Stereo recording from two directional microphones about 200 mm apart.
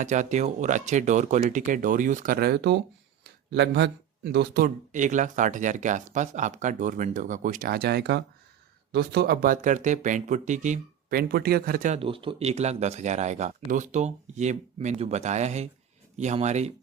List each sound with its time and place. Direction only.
0.0 s speech: 35° right (ahead or behind)
11.9 s speech: 25° right (ahead or behind)